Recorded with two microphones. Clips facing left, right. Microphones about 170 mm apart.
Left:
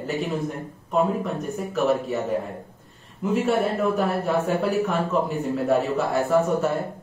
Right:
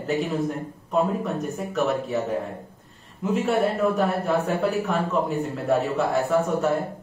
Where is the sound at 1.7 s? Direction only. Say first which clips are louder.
Left 2 dB; centre (ahead or behind).